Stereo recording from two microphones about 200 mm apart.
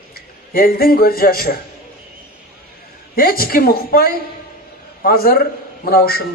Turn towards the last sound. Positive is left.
turn(degrees=50)  # may be behind; listen again after turning